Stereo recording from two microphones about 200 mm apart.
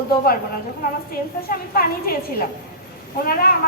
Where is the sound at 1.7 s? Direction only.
45° left (ahead or behind).